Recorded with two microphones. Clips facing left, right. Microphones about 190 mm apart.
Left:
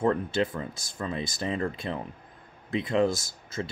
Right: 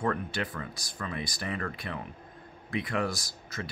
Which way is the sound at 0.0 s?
25° left (ahead or behind).